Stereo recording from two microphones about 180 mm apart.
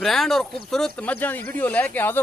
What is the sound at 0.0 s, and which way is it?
Speech, centre (ahead or behind).